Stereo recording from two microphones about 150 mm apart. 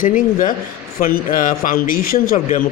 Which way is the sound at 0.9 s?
80° left.